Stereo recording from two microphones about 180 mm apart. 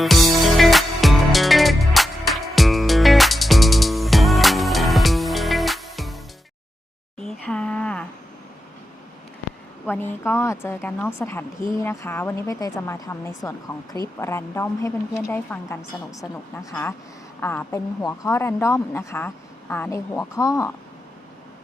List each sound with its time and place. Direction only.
0.0 s music: centre (ahead or behind)
7.2 s a sound: 5° left (ahead or behind)
9.8 s speech: 10° left (ahead or behind)
17.4 s speech: 10° left (ahead or behind)